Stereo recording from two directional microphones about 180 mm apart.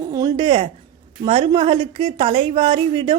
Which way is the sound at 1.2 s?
25° right (ahead or behind).